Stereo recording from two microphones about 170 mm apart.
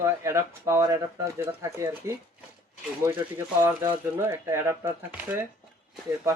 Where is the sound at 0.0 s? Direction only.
15° right (ahead or behind).